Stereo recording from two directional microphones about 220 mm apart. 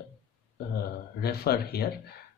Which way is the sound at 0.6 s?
45° left (ahead or behind).